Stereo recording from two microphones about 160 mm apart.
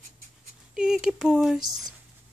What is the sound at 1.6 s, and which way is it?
Speech, 25° right (ahead or behind).